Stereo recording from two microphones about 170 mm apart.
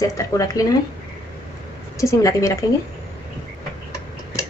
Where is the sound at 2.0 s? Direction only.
20° left (ahead or behind).